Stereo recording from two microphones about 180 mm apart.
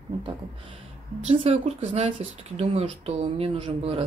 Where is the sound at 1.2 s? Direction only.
35° right (ahead or behind).